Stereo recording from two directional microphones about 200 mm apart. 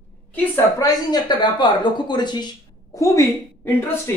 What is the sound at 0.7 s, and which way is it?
Speech, 20° left (ahead or behind).